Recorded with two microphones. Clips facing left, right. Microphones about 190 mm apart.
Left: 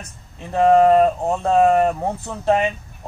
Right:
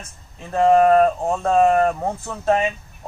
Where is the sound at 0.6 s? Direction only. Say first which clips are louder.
Left 1 dB; 15° left (ahead or behind).